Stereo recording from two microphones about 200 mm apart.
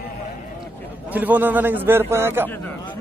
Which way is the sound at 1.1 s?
10° right (ahead or behind).